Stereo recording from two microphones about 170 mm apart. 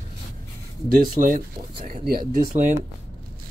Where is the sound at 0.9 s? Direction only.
55° right (ahead or behind).